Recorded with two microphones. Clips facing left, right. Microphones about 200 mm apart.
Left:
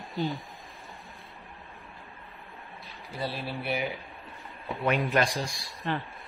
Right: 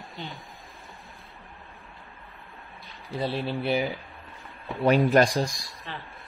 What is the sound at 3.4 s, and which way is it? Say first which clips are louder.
Speech: right 7 dB; 25° right (ahead or behind).